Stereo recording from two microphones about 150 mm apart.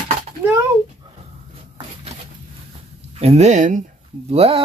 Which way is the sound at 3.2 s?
45° right (ahead or behind).